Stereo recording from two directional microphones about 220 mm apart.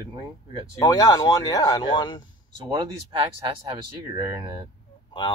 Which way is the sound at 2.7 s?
20° right (ahead or behind).